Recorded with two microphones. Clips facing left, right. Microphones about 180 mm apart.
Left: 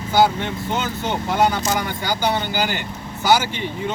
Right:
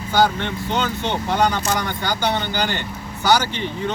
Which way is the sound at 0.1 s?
5° left (ahead or behind).